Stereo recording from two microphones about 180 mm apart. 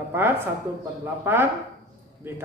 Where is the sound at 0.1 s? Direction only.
15° right (ahead or behind).